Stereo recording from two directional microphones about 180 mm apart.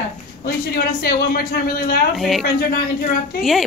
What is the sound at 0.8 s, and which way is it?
Speech, 55° left (ahead or behind).